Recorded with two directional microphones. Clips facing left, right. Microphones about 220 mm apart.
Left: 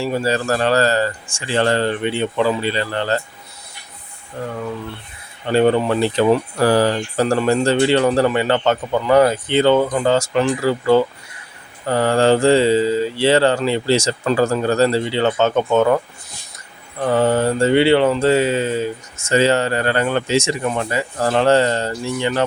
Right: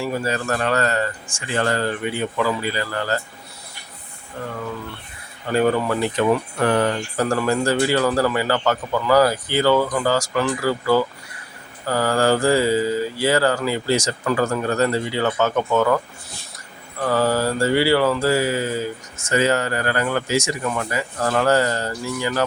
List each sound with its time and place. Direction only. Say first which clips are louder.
0.0 s speech: left 4 dB; 30° left (ahead or behind)
5.5 s speech: left 4 dB; 25° left (ahead or behind)
17.0 s speech: left 3 dB; 25° left (ahead or behind)